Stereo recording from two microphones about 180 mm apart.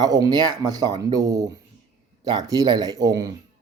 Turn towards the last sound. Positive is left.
turn(degrees=-20)  # may be behind; listen again after turning